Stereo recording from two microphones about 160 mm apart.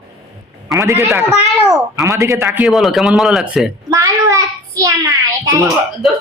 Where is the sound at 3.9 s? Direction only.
20° right (ahead or behind).